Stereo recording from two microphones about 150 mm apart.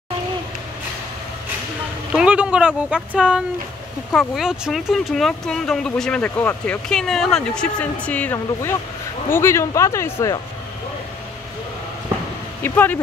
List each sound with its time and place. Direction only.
2.1 s speech: 10° right (ahead or behind); by 10.3 s 15° left (ahead or behind)
12.6 s speech: 10° left (ahead or behind)